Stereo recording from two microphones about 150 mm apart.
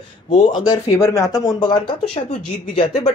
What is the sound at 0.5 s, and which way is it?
Speech, 25° left (ahead or behind).